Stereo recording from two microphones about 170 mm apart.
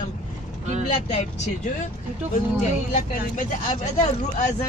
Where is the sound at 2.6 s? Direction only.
45° left (ahead or behind).